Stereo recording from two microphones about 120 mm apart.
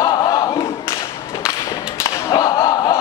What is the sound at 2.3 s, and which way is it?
Whip, 35° left (ahead or behind).